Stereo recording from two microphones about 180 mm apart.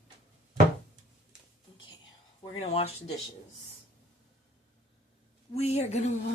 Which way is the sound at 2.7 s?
35° left (ahead or behind).